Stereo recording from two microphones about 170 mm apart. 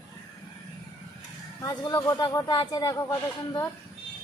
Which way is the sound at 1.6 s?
20° left (ahead or behind).